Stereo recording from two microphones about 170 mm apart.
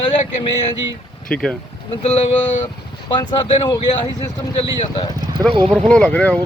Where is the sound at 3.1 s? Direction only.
25° left (ahead or behind).